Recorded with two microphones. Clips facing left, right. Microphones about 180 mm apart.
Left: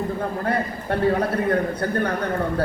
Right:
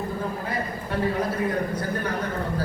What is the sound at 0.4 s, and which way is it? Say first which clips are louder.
A man's voice: left 6 dB; 60° left (ahead or behind).